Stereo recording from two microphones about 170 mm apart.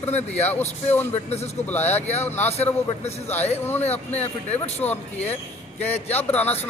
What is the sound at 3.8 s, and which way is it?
Speech, 40° left (ahead or behind).